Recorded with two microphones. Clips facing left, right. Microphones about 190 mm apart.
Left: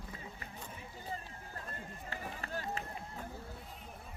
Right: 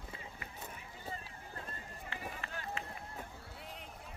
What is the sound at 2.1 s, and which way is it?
Run, 40° left (ahead or behind).